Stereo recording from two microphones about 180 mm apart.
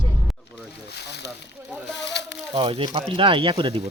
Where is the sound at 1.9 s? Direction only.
75° left (ahead or behind).